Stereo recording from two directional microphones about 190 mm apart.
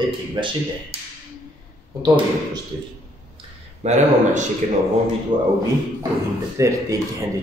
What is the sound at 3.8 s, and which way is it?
Speech, 35° right (ahead or behind).